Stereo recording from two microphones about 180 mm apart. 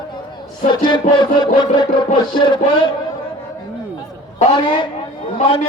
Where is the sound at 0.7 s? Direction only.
25° left (ahead or behind).